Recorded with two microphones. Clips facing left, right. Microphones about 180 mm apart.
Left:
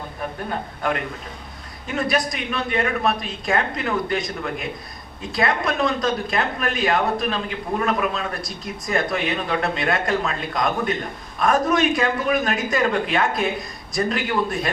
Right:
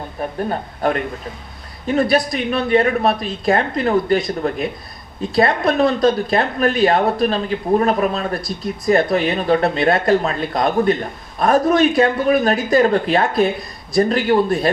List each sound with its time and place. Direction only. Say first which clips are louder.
0.8 s a woman's voice: right 6 dB; 35° right (ahead or behind)